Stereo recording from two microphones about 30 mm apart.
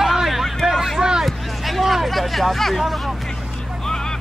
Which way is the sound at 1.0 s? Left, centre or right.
Right.